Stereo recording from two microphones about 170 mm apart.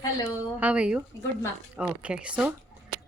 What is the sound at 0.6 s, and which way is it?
Speech, 5° right (ahead or behind).